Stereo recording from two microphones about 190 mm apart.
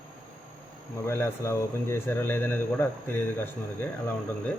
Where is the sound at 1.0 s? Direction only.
15° left (ahead or behind).